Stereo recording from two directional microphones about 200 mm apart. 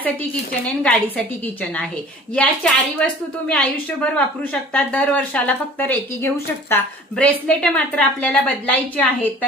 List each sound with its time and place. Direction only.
0.0 s speech: 5° left (ahead or behind)
2.3 s a woman's voice: 5° left (ahead or behind)